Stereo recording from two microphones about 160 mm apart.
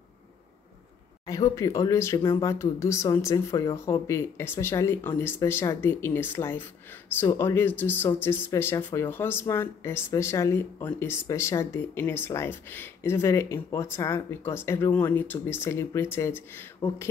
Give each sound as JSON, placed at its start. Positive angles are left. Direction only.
{"t": 1.2, "sound": "speech", "side_deg": 20}